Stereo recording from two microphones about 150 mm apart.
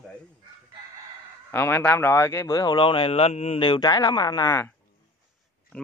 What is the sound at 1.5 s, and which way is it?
Speech, 15° left (ahead or behind).